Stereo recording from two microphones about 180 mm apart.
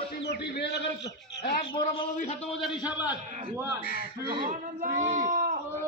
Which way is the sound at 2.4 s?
Centre (ahead or behind).